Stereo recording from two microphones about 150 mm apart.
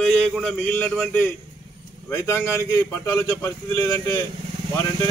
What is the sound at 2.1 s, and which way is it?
A man's voice, 20° left (ahead or behind).